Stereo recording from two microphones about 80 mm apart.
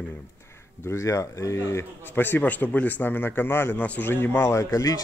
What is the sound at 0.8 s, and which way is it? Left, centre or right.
A man's voice, left.